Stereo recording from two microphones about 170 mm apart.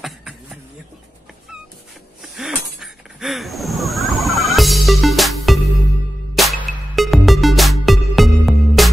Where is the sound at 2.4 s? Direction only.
Centre (ahead or behind).